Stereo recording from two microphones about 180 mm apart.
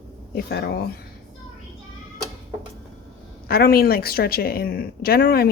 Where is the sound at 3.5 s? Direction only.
60° left (ahead or behind).